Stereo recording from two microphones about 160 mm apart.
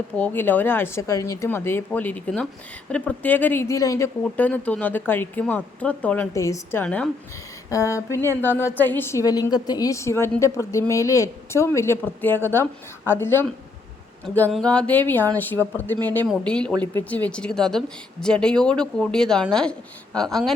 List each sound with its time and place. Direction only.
0.2 s a woman's voice: 10° left (ahead or behind)
6.3 s a woman's voice: 20° left (ahead or behind)
7.7 s a woman's voice: 20° left (ahead or behind)
14.5 s a woman's voice: 5° left (ahead or behind)